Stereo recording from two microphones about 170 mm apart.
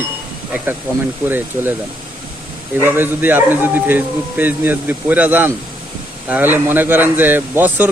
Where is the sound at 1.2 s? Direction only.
10° right (ahead or behind).